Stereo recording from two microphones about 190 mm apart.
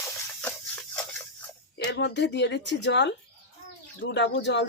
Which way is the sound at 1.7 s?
70° left (ahead or behind).